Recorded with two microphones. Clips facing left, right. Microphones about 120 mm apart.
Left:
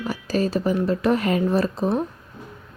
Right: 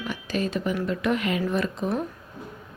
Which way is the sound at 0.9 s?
35° left (ahead or behind).